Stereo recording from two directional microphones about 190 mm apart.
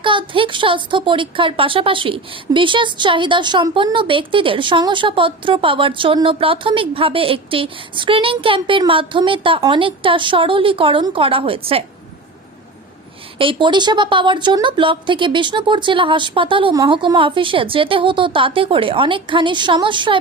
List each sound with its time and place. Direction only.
0.0 s a woman's voice: 25° right (ahead or behind)
13.4 s a woman's voice: 25° right (ahead or behind)